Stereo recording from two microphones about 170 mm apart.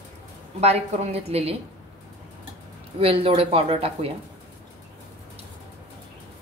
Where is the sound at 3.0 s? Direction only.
35° right (ahead or behind).